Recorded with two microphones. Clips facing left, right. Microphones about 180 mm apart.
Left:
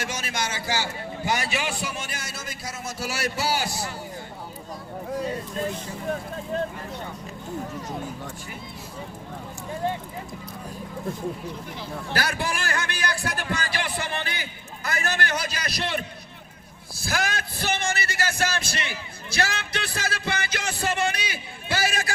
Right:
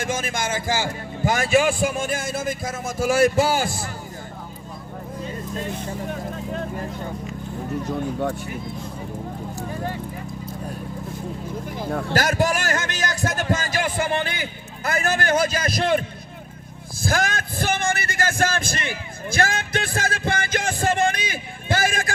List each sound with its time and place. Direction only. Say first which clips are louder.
0.0 s speech: right 5 dB; 50° right (ahead or behind)
7.9 s speech: right 9 dB; 65° right (ahead or behind)
11.8 s speech: right 11 dB; 60° right (ahead or behind)
12.1 s speech: right 6 dB; 45° right (ahead or behind)
17.0 s speech: right 5 dB; 50° right (ahead or behind)